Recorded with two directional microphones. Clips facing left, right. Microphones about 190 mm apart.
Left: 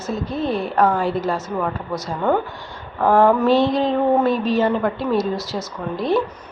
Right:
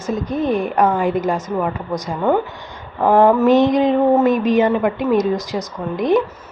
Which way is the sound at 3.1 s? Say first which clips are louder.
Right 2 dB; 20° right (ahead or behind).